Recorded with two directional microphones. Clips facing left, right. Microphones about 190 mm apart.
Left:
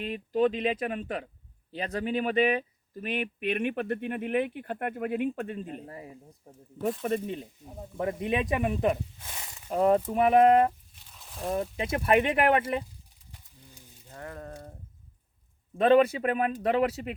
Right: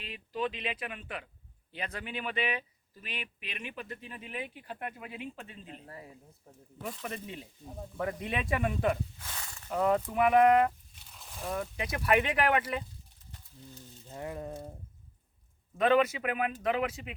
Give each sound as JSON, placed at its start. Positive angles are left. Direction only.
{"t": 0.0, "sound": "speech", "side_deg": 45}
{"t": 5.8, "sound": "speech", "side_deg": 25}
{"t": 7.0, "sound": "speech", "side_deg": 45}
{"t": 7.6, "sound": "speech", "side_deg": 10}
{"t": 7.9, "sound": "speech", "side_deg": 25}
{"t": 9.6, "sound": "speech", "side_deg": 30}
{"t": 11.0, "sound": "a sound", "side_deg": 0}
{"t": 11.4, "sound": "speech", "side_deg": 25}
{"t": 13.3, "sound": "a sound", "side_deg": 10}
{"t": 14.1, "sound": "a sound", "side_deg": -15}
{"t": 15.7, "sound": "a man's voice", "side_deg": 30}